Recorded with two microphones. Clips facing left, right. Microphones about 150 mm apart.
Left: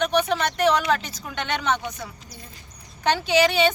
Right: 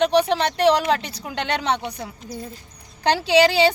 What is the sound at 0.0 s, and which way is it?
A woman's voice, 30° right (ahead or behind).